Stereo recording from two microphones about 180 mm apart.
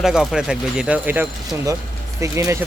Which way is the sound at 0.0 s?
5° right (ahead or behind).